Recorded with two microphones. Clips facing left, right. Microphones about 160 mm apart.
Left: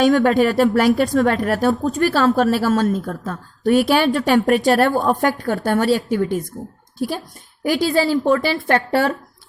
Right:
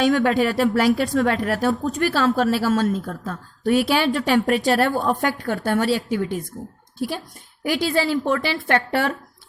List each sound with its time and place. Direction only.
0.0 s a woman's voice: 45° left (ahead or behind)
7.6 s a woman's voice: 40° left (ahead or behind)